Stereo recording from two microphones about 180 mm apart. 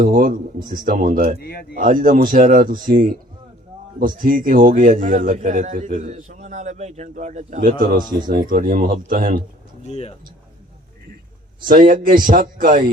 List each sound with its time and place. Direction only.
0.0 s a man's voice: 50° right (ahead or behind)
1.4 s speech: 60° left (ahead or behind)
1.7 s a man's voice: 50° right (ahead or behind)
9.8 s speech: 35° left (ahead or behind)
11.6 s a man's voice: 50° right (ahead or behind)